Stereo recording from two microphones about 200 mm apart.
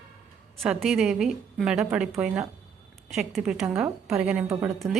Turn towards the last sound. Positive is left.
turn(degrees=-15)  # may be behind; listen again after turning